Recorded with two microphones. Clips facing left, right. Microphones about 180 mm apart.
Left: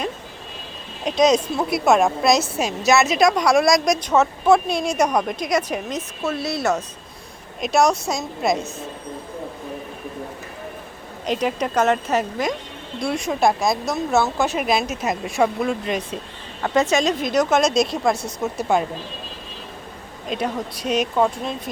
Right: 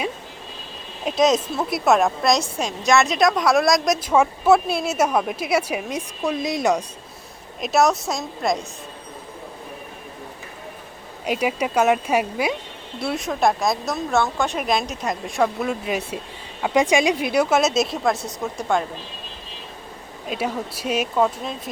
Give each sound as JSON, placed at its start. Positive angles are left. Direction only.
{"t": 1.0, "sound": "a woman's voice", "side_deg": 0}
{"t": 7.6, "sound": "a woman's voice", "side_deg": 0}
{"t": 11.3, "sound": "a woman's voice", "side_deg": -10}
{"t": 20.2, "sound": "a woman's voice", "side_deg": -5}